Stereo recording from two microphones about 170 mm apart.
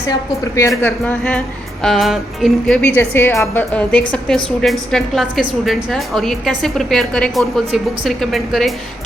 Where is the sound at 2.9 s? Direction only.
15° left (ahead or behind).